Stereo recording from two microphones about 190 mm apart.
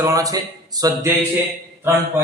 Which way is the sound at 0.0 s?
15° right (ahead or behind).